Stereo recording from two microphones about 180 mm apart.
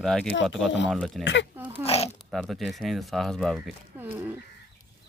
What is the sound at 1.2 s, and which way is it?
Speech, 90° left.